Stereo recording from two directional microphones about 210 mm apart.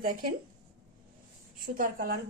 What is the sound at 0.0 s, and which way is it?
Speech, 45° right (ahead or behind).